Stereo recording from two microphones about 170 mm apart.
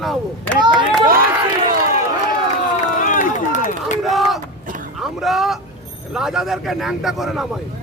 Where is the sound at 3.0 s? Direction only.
50° left (ahead or behind).